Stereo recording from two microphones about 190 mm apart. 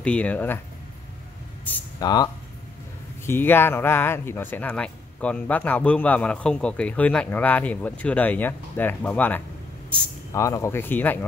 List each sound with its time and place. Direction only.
0.0 s speech: 5° left (ahead or behind)
2.0 s speech: 20° left (ahead or behind)
3.3 s speech: 10° left (ahead or behind)